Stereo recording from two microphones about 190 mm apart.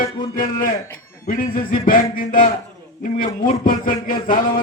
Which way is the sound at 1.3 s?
45° left (ahead or behind).